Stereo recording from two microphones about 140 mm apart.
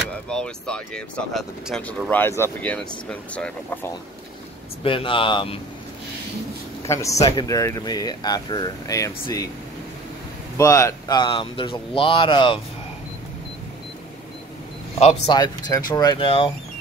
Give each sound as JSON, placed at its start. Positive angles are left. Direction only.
{"t": 0.1, "sound": "speech", "side_deg": 5}
{"t": 4.8, "sound": "speech", "side_deg": 40}
{"t": 6.9, "sound": "speech", "side_deg": 20}
{"t": 10.6, "sound": "speech", "side_deg": 20}
{"t": 15.7, "sound": "speech", "side_deg": 25}
{"t": 16.3, "sound": "speech", "side_deg": 40}